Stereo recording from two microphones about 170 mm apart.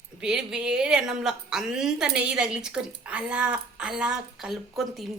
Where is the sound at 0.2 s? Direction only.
5° right (ahead or behind).